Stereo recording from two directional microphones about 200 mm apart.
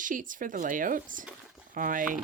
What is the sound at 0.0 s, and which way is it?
Speech, 40° right (ahead or behind).